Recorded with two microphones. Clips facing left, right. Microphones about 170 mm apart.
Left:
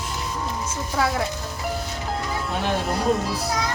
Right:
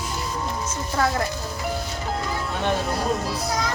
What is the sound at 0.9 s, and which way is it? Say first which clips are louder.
Speech: even; 5° left (ahead or behind).